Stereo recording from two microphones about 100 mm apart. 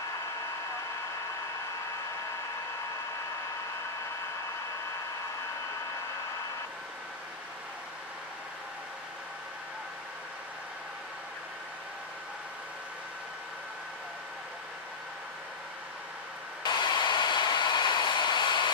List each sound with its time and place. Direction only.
16.6 s train: 45° left (ahead or behind)